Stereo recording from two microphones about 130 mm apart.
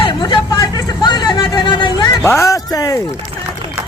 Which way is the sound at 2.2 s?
20° left (ahead or behind).